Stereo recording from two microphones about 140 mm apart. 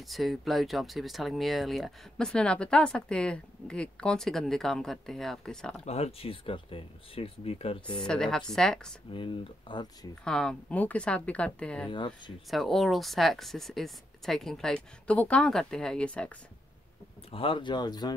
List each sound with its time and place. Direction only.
0.1 s speech: centre (ahead or behind)
5.9 s speech: 50° left (ahead or behind)
8.0 s speech: 5° left (ahead or behind)
9.1 s speech: 35° left (ahead or behind)
10.2 s speech: 5° left (ahead or behind)
17.3 s speech: 40° left (ahead or behind)